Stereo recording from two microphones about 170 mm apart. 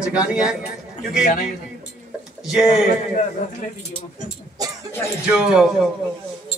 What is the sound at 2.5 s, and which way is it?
Speech, centre (ahead or behind).